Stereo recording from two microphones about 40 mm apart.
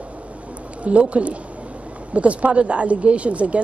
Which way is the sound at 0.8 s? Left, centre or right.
Right.